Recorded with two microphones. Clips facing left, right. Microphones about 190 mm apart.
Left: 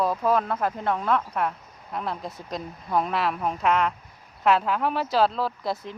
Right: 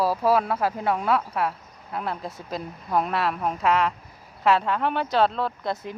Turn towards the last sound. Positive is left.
turn(degrees=0)  # may be behind; listen again after turning